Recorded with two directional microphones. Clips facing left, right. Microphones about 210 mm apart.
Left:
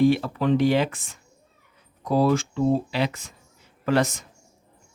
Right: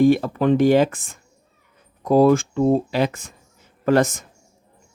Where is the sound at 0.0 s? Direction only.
50° right (ahead or behind).